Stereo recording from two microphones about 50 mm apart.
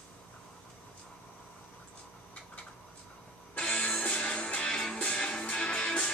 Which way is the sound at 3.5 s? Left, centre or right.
Centre.